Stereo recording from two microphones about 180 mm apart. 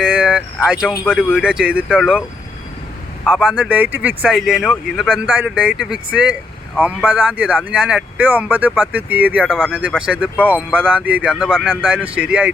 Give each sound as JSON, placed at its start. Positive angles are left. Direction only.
{"t": 0.0, "sound": "a sound", "side_deg": -5}
{"t": 1.1, "sound": "speech", "side_deg": -5}
{"t": 3.2, "sound": "speech", "side_deg": -5}
{"t": 9.5, "sound": "speech", "side_deg": 5}
{"t": 10.4, "sound": "speech", "side_deg": -5}